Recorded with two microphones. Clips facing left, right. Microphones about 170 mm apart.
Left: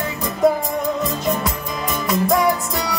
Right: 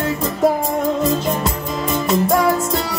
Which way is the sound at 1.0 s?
25° right (ahead or behind).